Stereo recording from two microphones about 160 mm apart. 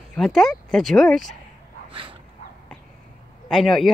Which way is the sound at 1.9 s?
35° right (ahead or behind).